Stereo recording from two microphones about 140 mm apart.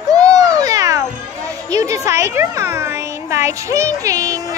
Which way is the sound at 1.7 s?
20° right (ahead or behind).